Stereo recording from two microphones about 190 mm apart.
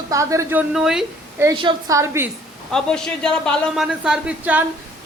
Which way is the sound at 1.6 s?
20° right (ahead or behind).